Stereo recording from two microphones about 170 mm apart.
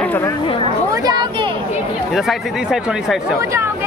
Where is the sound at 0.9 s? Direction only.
25° right (ahead or behind).